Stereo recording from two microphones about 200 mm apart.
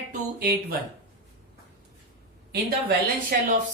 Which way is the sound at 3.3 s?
45° right (ahead or behind).